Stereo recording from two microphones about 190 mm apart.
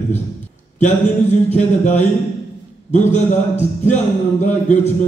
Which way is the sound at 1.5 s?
35° left (ahead or behind).